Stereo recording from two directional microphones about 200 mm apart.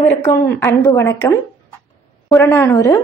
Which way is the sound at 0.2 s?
10° left (ahead or behind).